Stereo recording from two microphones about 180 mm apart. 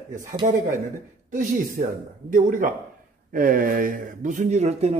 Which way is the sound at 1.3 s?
45° right (ahead or behind).